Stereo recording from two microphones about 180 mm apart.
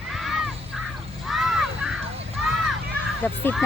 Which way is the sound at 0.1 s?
Centre (ahead or behind).